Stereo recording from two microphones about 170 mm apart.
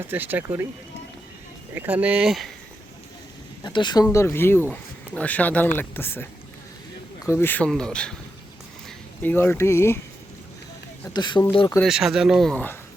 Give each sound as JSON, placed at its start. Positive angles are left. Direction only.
{"t": 0.0, "sound": "speech", "side_deg": -10}
{"t": 1.7, "sound": "speech", "side_deg": -10}
{"t": 3.6, "sound": "speech", "side_deg": 25}
{"t": 7.3, "sound": "speech", "side_deg": 10}
{"t": 9.2, "sound": "speech", "side_deg": 10}
{"t": 11.1, "sound": "speech", "side_deg": 25}
{"t": 11.8, "sound": "speech", "side_deg": -5}